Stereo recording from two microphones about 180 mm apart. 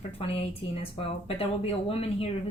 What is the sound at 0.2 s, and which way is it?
Speech, 30° left (ahead or behind).